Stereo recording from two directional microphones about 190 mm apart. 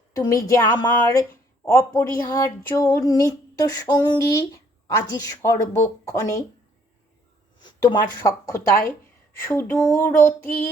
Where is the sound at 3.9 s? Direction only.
20° left (ahead or behind).